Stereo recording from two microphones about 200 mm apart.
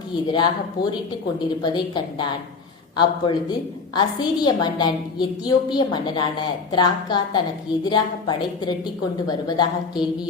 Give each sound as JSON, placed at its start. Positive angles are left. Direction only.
{"t": 0.1, "sound": "a woman's voice", "side_deg": 20}